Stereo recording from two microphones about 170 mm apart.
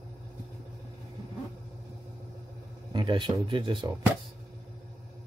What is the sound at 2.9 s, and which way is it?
Speech, 25° right (ahead or behind).